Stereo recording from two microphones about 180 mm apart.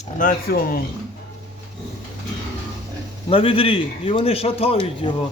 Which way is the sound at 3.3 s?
30° left (ahead or behind).